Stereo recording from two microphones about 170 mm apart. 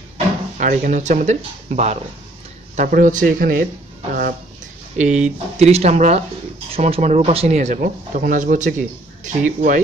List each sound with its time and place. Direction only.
0.6 s speech: 50° right (ahead or behind)
4.9 s speech: 45° right (ahead or behind)